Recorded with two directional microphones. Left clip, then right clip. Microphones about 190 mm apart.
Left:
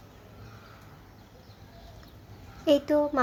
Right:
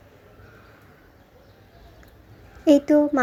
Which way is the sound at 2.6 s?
20° right (ahead or behind).